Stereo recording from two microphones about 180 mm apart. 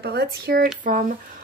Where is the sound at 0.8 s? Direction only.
45° right (ahead or behind).